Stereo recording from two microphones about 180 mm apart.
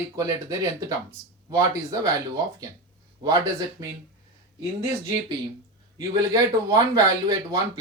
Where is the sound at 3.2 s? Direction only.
20° right (ahead or behind).